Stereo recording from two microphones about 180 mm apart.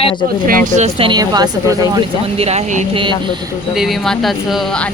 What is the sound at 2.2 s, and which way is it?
Speech, 35° right (ahead or behind).